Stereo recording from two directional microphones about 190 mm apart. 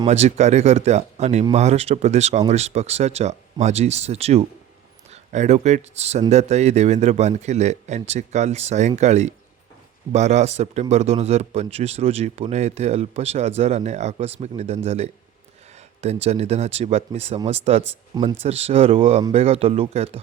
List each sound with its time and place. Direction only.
0.0 s a man's voice: 35° right (ahead or behind)